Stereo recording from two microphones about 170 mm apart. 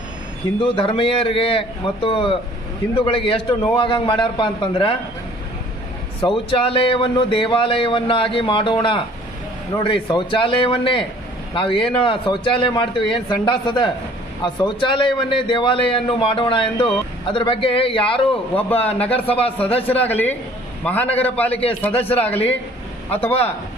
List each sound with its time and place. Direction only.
0.6 s a man's voice: 30° left (ahead or behind)
6.2 s a man's voice: 30° left (ahead or behind)
18.7 s a man's voice: 10° left (ahead or behind)
19.1 s a man's voice: 35° left (ahead or behind)
19.9 s a man's voice: 10° left (ahead or behind)